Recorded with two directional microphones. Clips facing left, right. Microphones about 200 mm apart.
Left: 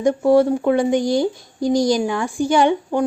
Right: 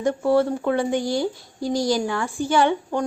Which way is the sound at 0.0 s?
15° left (ahead or behind).